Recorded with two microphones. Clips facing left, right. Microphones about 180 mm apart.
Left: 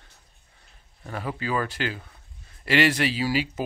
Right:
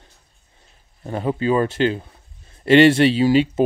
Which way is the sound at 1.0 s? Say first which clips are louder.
Right 10 dB; 25° right (ahead or behind).